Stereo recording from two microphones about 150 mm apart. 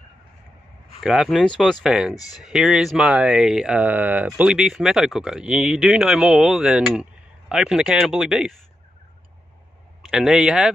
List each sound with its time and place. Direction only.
1.0 s speech: centre (ahead or behind)
10.0 s speech: centre (ahead or behind)